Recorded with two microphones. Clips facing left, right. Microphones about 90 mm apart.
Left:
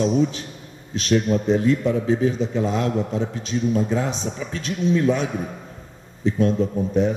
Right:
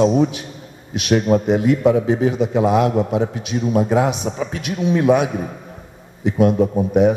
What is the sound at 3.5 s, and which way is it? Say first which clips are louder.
Speech: right 1 dB; 35° right (ahead or behind).